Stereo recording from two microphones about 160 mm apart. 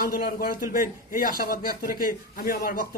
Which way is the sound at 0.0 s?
70° left (ahead or behind).